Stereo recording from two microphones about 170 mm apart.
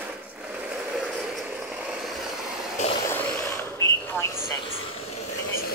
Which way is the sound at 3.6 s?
15° left (ahead or behind).